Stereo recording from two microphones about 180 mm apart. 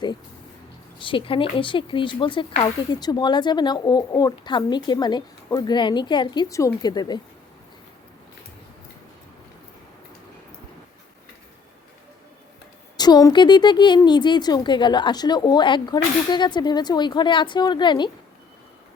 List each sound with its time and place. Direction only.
0.9 s speech: 30° left (ahead or behind)
13.0 s speech: 20° left (ahead or behind)